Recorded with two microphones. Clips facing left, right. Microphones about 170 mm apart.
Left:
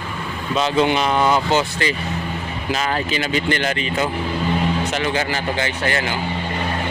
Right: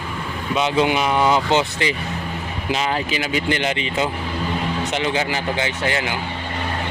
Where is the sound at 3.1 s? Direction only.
10° right (ahead or behind).